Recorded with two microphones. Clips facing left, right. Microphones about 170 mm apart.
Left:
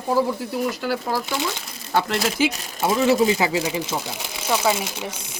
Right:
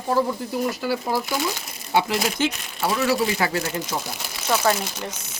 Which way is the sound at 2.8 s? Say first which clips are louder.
Left 4 dB; 20° left (ahead or behind).